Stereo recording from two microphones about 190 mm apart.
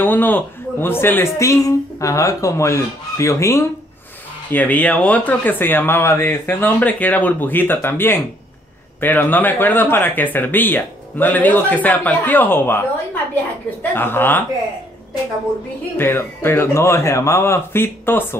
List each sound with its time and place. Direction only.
0.0 s speech: 10° left (ahead or behind)
16.0 s speech: 10° left (ahead or behind)